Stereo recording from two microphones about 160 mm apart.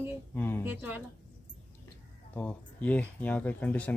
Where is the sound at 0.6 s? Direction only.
10° right (ahead or behind).